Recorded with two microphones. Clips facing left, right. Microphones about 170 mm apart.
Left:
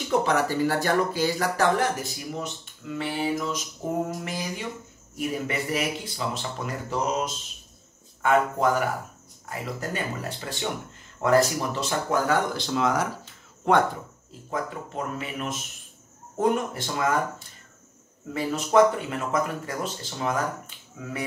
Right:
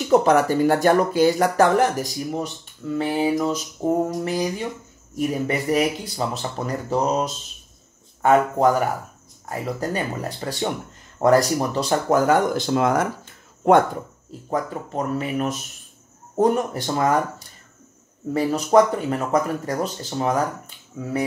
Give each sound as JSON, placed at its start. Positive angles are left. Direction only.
{"t": 0.1, "sound": "speech", "side_deg": -45}
{"t": 5.5, "sound": "speech", "side_deg": -40}
{"t": 14.5, "sound": "speech", "side_deg": -40}
{"t": 18.3, "sound": "speech", "side_deg": -40}